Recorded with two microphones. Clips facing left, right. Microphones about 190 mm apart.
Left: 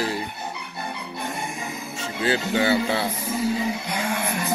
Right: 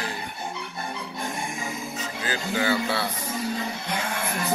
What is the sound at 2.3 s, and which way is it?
Speech, 25° left (ahead or behind).